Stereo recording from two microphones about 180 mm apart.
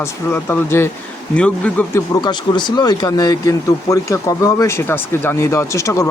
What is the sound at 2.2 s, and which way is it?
Speech, 25° left (ahead or behind).